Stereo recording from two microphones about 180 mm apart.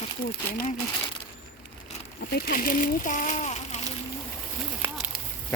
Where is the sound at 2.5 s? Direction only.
50° left (ahead or behind).